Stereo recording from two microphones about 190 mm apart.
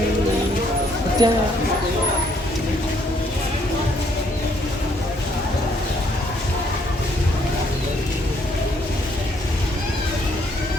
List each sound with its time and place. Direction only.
1.2 s speech: 20° right (ahead or behind)